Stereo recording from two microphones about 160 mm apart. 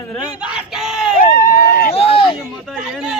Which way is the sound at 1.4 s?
60° left (ahead or behind).